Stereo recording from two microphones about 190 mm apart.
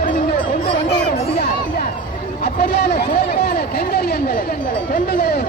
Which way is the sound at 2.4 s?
60° left (ahead or behind).